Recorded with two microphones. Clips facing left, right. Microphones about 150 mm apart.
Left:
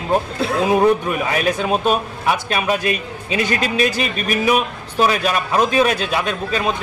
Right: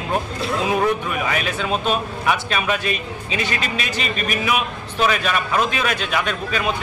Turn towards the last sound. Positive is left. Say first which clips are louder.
# left 2 dB
turn(degrees=35)  # may be behind; listen again after turning